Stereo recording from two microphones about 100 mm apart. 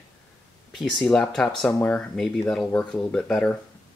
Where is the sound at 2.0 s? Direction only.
10° left (ahead or behind).